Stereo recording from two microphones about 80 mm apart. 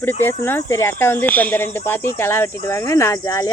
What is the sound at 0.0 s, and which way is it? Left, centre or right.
Speech, left.